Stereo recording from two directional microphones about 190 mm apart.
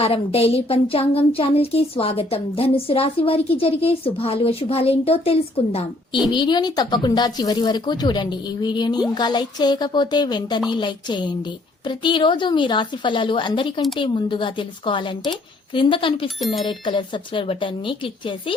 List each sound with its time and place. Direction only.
0.0 s a woman's voice: 30° left (ahead or behind)